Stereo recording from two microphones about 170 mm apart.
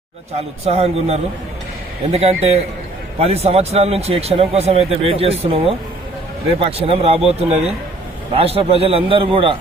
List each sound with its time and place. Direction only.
0.6 s a man's voice: 35° right (ahead or behind)